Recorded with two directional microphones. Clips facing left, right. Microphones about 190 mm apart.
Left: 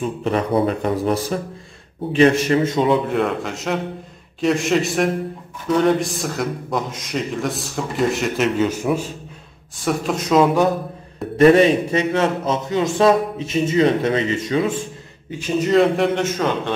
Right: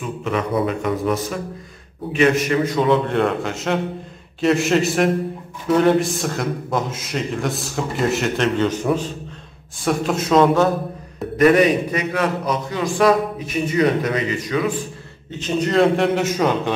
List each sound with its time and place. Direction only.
0.2 s a man's voice: 35° left (ahead or behind)
3.1 s a man's voice: centre (ahead or behind)
11.3 s a man's voice: 30° left (ahead or behind)
15.3 s a man's voice: 5° left (ahead or behind)